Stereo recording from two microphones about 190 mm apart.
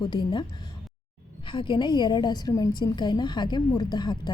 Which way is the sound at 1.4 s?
25° left (ahead or behind).